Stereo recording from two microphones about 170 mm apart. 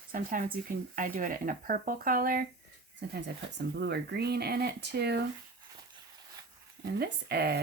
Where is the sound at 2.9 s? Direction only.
85° right.